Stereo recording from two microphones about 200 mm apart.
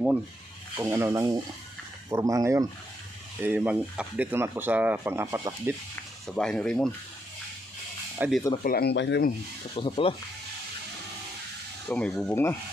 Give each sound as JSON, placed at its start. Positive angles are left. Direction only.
{"t": 0.7, "sound": "speech", "side_deg": -15}
{"t": 6.2, "sound": "speech", "side_deg": 0}
{"t": 8.2, "sound": "speech", "side_deg": -10}
{"t": 8.6, "sound": "speech", "side_deg": 50}
{"t": 9.8, "sound": "speech", "side_deg": 25}
{"t": 11.9, "sound": "speech", "side_deg": 5}